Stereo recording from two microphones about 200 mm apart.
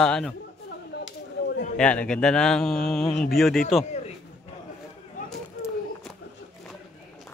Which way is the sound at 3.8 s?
35° left (ahead or behind).